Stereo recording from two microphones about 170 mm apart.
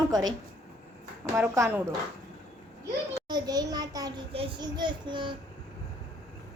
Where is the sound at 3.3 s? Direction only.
25° right (ahead or behind).